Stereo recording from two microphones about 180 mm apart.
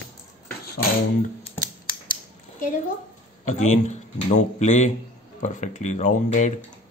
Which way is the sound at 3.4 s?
40° left (ahead or behind).